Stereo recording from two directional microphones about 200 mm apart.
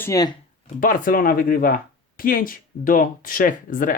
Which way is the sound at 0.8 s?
40° left (ahead or behind).